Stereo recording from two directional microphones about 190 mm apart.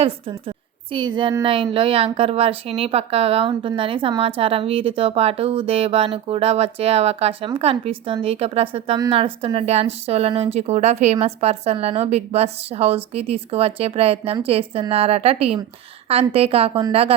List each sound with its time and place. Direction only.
0.0 s a woman's voice: 25° right (ahead or behind)